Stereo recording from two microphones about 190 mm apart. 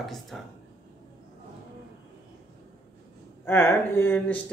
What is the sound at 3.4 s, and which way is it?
Speech, 10° left (ahead or behind).